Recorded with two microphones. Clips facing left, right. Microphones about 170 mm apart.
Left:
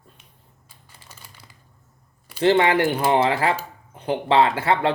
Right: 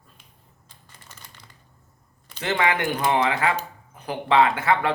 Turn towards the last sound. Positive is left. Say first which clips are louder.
# left 1 dB
turn(degrees=30)  # may be behind; listen again after turning